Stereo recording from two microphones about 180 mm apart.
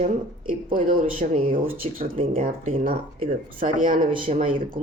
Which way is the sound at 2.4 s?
50° right (ahead or behind).